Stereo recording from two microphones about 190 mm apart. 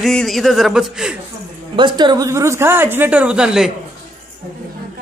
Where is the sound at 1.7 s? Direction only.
25° right (ahead or behind); by 3.7 s 5° right (ahead or behind).